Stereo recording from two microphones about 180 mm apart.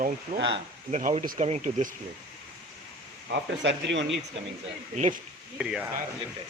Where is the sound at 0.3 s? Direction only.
75° right (ahead or behind).